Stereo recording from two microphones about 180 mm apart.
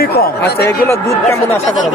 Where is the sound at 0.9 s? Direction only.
15° left (ahead or behind).